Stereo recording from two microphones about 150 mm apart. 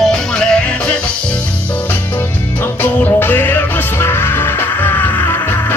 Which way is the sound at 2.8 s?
15° left (ahead or behind).